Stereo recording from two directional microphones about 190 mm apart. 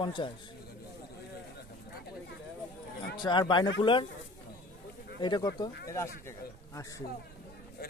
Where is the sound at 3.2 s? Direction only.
25° left (ahead or behind).